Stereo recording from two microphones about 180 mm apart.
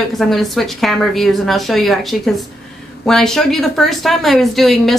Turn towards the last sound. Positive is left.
turn(degrees=0)  # may be behind; listen again after turning